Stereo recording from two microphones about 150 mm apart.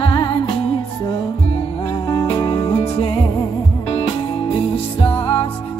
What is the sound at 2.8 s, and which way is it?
Music, 35° left (ahead or behind).